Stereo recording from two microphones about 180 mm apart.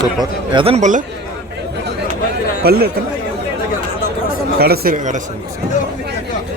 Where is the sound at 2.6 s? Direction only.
60° right (ahead or behind).